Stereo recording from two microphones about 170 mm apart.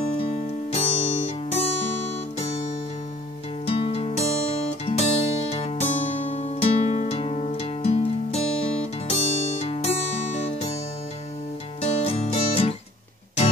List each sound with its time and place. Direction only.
0.8 s music: 45° left (ahead or behind)
3.6 s music: 35° left (ahead or behind)
11.8 s music: 35° left (ahead or behind)